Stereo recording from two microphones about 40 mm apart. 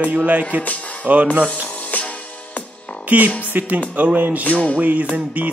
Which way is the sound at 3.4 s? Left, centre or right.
Right.